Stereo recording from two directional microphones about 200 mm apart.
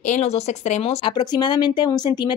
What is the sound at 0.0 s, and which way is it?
Speech, 35° left (ahead or behind).